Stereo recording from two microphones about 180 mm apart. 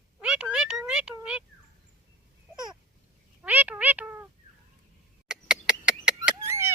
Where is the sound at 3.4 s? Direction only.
10° right (ahead or behind).